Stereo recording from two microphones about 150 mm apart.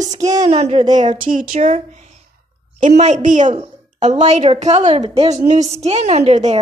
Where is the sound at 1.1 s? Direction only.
65° right (ahead or behind).